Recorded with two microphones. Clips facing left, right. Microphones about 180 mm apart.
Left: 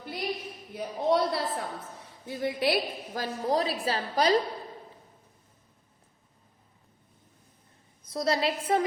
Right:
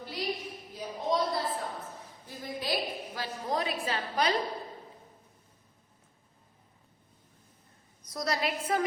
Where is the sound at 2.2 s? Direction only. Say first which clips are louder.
Left 9 dB; 70° left (ahead or behind).